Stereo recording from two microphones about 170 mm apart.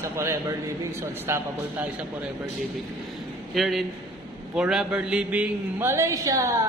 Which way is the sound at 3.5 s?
Centre (ahead or behind).